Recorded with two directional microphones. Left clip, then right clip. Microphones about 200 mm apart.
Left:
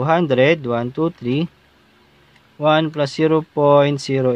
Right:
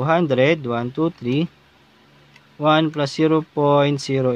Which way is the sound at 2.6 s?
5° left (ahead or behind).